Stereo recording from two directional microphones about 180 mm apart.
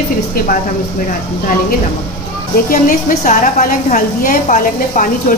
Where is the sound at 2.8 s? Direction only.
45° left (ahead or behind).